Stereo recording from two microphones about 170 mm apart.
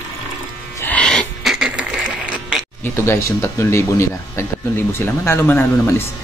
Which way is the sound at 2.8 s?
15° left (ahead or behind).